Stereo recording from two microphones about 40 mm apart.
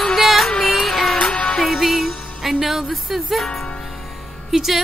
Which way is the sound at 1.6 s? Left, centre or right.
Centre.